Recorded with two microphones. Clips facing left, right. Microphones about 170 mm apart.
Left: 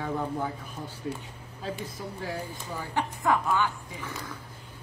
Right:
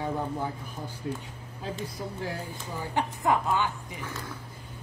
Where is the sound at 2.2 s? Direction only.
15° left (ahead or behind).